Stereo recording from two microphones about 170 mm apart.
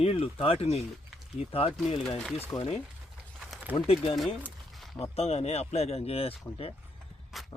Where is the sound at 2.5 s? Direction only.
5° left (ahead or behind).